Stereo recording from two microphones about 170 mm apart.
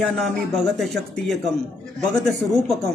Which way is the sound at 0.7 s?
Centre (ahead or behind).